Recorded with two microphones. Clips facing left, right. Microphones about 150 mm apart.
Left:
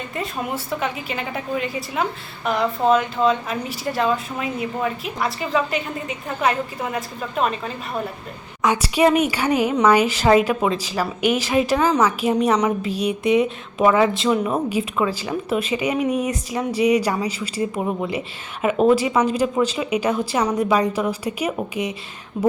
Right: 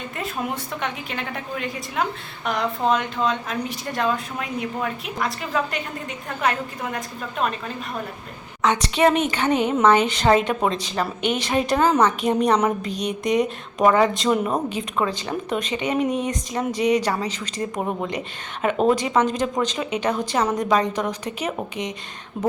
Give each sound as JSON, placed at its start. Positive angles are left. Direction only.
{"t": 0.2, "sound": "a woman's voice", "side_deg": 0}
{"t": 8.6, "sound": "a woman's voice", "side_deg": 10}